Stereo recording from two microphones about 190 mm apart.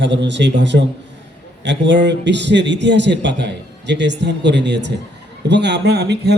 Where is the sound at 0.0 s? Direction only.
70° right (ahead or behind).